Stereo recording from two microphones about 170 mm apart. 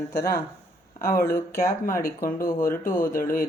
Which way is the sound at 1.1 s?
55° left (ahead or behind).